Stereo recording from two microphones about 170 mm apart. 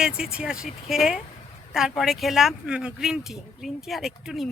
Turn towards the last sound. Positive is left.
turn(degrees=0)  # may be behind; listen again after turning